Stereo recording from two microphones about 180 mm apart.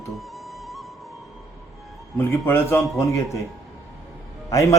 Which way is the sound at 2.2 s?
15° left (ahead or behind).